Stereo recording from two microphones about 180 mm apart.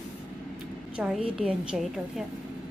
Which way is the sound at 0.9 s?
5° right (ahead or behind).